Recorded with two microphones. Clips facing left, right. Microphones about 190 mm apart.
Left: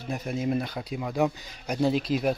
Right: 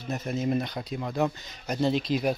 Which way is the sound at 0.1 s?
10° left (ahead or behind).